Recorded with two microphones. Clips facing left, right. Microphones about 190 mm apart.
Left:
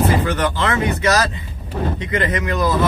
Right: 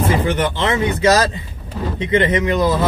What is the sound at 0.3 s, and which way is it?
Speech, 25° right (ahead or behind).